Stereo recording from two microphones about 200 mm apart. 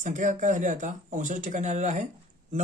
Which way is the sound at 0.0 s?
40° right (ahead or behind).